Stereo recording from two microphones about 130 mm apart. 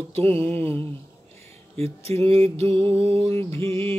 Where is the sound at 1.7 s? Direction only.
50° right (ahead or behind).